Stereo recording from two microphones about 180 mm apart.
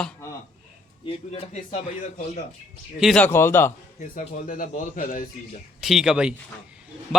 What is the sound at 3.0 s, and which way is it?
Speech, centre (ahead or behind).